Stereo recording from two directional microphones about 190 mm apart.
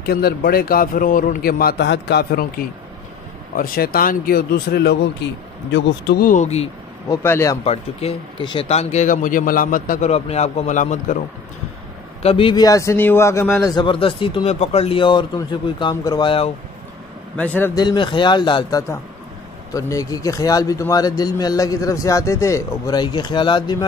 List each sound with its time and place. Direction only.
0.0 s speech: 55° left (ahead or behind); by 6.7 s 35° left (ahead or behind)
7.1 s speech: 15° left (ahead or behind)
7.6 s speech: 30° left (ahead or behind)
12.2 s speech: 30° left (ahead or behind)
17.4 s speech: 10° left (ahead or behind)